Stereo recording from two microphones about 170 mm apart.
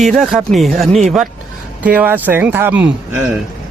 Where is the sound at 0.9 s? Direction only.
45° right (ahead or behind).